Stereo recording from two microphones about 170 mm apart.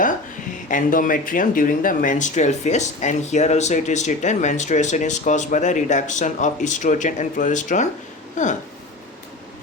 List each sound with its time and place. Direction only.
0.7 s speech: 55° left (ahead or behind)